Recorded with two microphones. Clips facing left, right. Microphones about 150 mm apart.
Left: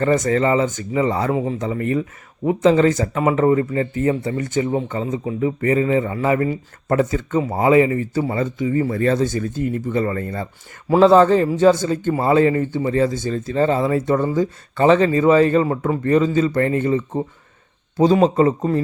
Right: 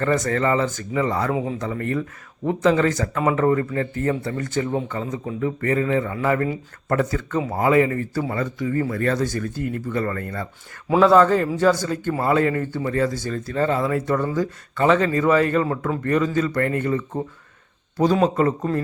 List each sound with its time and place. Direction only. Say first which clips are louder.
0.0 s speech: left 4 dB; 20° left (ahead or behind)
1.3 s speech: left 3 dB; centre (ahead or behind)
1.7 s a man's voice: left 4 dB; 15° left (ahead or behind)